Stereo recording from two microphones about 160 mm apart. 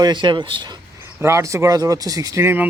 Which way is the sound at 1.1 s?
15° right (ahead or behind).